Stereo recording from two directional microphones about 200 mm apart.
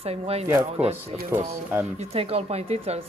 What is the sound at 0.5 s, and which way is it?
Speech, 10° right (ahead or behind).